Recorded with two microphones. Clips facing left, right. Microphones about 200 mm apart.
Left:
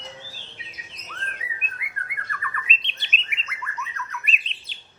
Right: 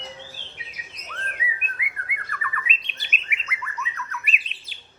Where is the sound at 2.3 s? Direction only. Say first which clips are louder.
Right 2 dB; centre (ahead or behind).